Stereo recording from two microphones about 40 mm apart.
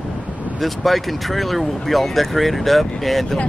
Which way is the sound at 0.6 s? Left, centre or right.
Centre.